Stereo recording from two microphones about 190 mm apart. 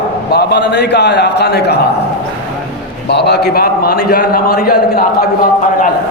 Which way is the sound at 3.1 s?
60° left (ahead or behind).